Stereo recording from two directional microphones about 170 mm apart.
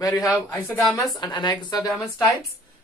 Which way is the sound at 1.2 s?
25° left (ahead or behind).